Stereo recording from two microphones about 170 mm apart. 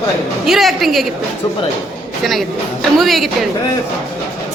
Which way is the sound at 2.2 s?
Centre (ahead or behind).